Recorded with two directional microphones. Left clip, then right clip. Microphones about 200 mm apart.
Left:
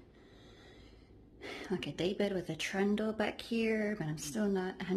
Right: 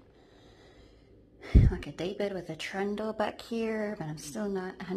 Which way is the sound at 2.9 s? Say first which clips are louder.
Right 3 dB; centre (ahead or behind).